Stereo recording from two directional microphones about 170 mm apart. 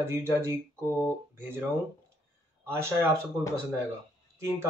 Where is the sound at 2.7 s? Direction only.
15° right (ahead or behind).